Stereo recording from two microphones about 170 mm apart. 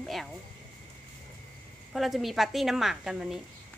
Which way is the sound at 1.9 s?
Centre (ahead or behind).